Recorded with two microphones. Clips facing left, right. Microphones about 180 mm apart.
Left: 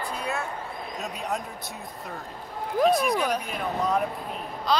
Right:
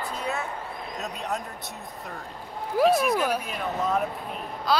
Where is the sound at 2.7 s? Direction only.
5° right (ahead or behind).